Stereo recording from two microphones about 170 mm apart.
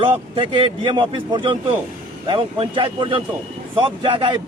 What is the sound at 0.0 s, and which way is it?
A man's voice, 30° right (ahead or behind).